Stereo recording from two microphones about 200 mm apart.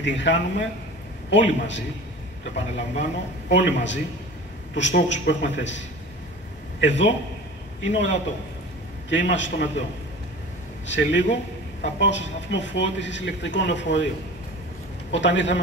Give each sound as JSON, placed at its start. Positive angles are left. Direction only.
{"t": 0.0, "sound": "speech", "side_deg": 65}
{"t": 10.9, "sound": "speech", "side_deg": 65}
{"t": 15.0, "sound": "speech", "side_deg": 65}